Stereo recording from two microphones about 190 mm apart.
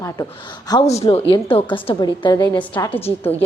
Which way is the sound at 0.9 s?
35° left (ahead or behind).